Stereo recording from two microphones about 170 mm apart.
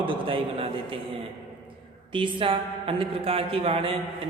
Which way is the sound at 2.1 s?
30° right (ahead or behind).